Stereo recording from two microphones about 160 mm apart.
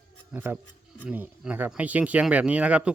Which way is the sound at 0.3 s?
10° right (ahead or behind).